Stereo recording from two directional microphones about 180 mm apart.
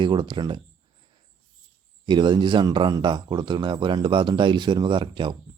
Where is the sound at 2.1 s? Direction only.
25° right (ahead or behind).